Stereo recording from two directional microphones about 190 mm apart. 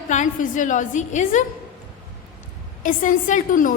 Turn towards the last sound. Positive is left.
turn(degrees=45)  # may be behind; listen again after turning